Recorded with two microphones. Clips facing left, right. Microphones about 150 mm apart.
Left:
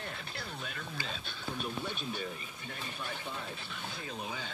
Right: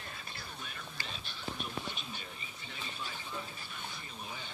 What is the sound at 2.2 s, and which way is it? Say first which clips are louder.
Speech: left 8 dB; 55° left (ahead or behind).